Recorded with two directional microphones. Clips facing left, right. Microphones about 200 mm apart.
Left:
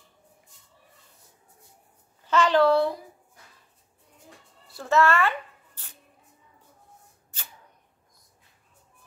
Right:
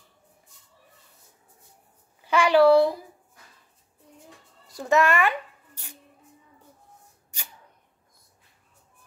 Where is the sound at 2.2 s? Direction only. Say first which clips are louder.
Right 3 dB; 10° right (ahead or behind).